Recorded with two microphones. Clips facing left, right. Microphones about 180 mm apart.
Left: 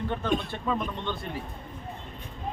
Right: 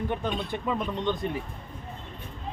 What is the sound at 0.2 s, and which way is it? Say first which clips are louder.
A man's voice: left 1 dB; 15° right (ahead or behind).